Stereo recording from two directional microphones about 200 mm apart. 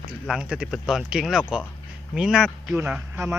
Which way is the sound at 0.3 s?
5° right (ahead or behind).